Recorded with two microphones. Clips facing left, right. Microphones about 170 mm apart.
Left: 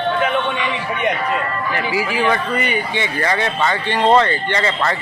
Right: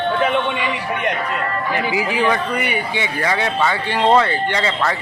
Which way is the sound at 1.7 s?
20° right (ahead or behind).